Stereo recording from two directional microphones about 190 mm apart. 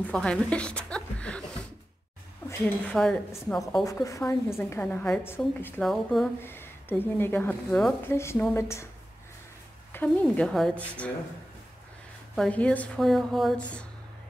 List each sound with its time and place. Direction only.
0.0 s a woman's voice: 5° left (ahead or behind)
2.4 s speech: 5° left (ahead or behind)
3.8 s a woman's voice: 15° left (ahead or behind); by 6.3 s centre (ahead or behind)
6.4 s a woman's voice: 10° left (ahead or behind)
9.9 s a woman's voice: 5° left (ahead or behind)
12.4 s a woman's voice: 5° left (ahead or behind)